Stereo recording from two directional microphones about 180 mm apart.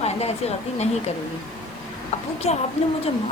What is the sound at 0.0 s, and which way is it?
Speech, 35° left (ahead or behind).